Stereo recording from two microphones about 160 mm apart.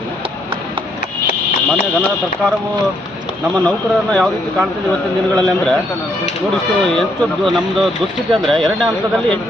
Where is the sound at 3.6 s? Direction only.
5° left (ahead or behind).